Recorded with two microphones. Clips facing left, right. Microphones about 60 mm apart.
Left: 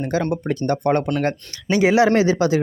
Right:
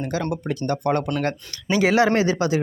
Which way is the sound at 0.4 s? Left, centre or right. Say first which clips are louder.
Left 3 dB; left.